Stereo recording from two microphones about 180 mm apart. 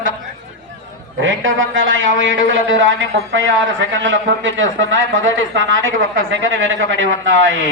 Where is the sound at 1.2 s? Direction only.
90° right.